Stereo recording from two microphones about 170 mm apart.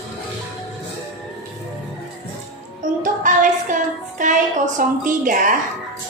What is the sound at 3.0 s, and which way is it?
A woman's voice, 50° right (ahead or behind).